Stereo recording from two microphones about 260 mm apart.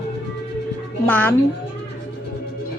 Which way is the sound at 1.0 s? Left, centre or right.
Centre.